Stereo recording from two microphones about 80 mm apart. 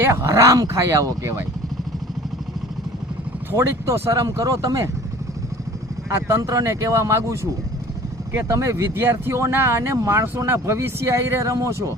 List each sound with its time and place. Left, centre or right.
0.0 s speech: right
3.5 s speech: right
6.1 s speech: right